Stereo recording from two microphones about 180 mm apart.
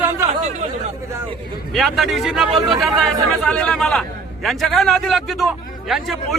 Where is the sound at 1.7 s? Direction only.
Centre (ahead or behind).